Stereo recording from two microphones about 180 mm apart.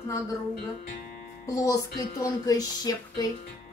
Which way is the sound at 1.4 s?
20° left (ahead or behind).